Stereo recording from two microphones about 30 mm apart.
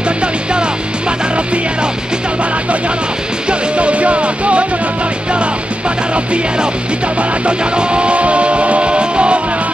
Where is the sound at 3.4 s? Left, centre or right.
Right.